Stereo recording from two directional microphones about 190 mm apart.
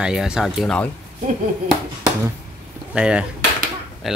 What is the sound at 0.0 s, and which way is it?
Speech, 5° right (ahead or behind).